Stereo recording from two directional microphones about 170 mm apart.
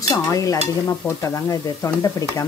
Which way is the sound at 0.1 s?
20° left (ahead or behind).